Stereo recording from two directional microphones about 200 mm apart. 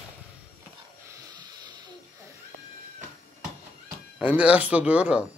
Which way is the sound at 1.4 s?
20° right (ahead or behind).